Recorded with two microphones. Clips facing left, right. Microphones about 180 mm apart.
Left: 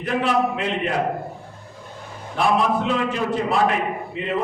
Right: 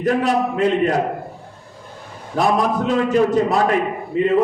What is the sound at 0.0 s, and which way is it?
A man's voice, 40° right (ahead or behind).